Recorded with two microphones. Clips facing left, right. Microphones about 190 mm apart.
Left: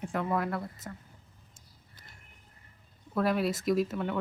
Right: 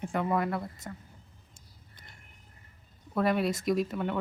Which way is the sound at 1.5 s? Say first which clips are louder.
Right 2 dB; 5° left (ahead or behind).